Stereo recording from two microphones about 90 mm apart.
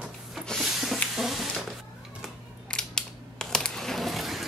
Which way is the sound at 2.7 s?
10° left (ahead or behind).